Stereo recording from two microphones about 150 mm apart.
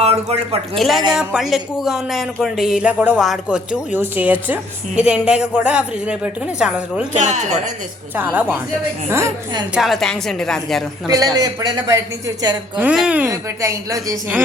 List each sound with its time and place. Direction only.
0.0 s speech: 40° right (ahead or behind)
0.8 s a woman's voice: centre (ahead or behind)
7.2 s speech: 50° right (ahead or behind)
8.1 s a woman's voice: 10° right (ahead or behind)
9.7 s speech: centre (ahead or behind)
11.1 s a woman's voice: 25° right (ahead or behind)
12.7 s a woman's voice: 5° right (ahead or behind)
13.3 s a woman's voice: 20° right (ahead or behind)